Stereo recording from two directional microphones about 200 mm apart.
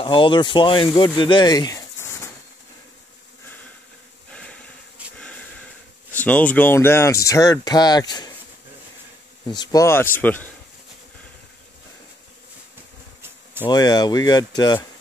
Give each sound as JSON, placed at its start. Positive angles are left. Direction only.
{"t": 0.0, "sound": "speech", "side_deg": 25}
{"t": 4.3, "sound": "a sound", "side_deg": 5}
{"t": 5.0, "sound": "a sound", "side_deg": -5}
{"t": 6.1, "sound": "speech", "side_deg": 5}
{"t": 9.5, "sound": "speech", "side_deg": 20}
{"t": 13.7, "sound": "speech", "side_deg": 20}